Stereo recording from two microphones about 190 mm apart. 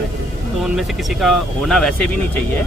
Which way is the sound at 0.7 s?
Centre (ahead or behind).